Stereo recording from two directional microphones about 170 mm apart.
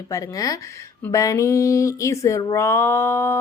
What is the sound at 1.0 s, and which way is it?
Humming, 20° left (ahead or behind).